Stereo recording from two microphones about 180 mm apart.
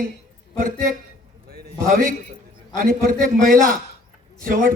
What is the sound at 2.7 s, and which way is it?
A man's voice, 50° right (ahead or behind).